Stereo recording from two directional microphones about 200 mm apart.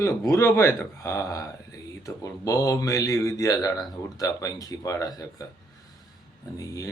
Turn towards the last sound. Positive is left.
turn(degrees=15)  # may be behind; listen again after turning